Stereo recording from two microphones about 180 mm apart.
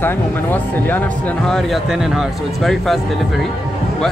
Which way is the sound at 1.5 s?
Centre (ahead or behind).